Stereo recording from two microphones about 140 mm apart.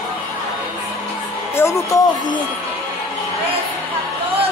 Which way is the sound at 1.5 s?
20° left (ahead or behind).